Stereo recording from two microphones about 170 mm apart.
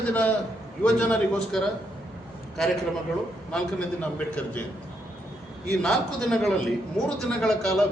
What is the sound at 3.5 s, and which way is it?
Speech, 5° left (ahead or behind).